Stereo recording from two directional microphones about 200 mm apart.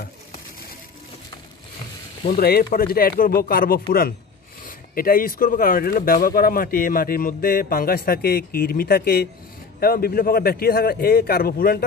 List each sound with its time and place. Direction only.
2.2 s speech: 50° left (ahead or behind)